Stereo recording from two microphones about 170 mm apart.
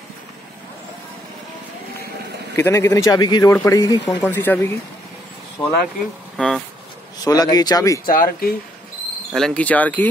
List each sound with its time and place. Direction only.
2.5 s speech: 15° left (ahead or behind)
6.3 s speech: 5° left (ahead or behind)
7.2 s speech: 20° left (ahead or behind)
8.1 s speech: 60° left (ahead or behind)
9.3 s speech: 5° left (ahead or behind)